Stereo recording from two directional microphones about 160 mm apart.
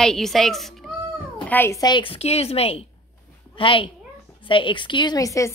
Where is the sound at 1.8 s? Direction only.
30° left (ahead or behind).